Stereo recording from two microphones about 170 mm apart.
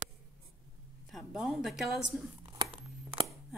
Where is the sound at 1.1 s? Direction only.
5° right (ahead or behind).